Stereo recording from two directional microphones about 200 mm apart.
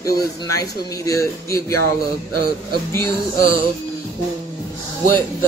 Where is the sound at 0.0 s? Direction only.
15° left (ahead or behind).